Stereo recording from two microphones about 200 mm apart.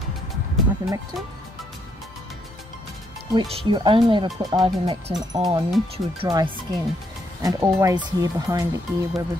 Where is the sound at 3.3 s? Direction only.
25° right (ahead or behind).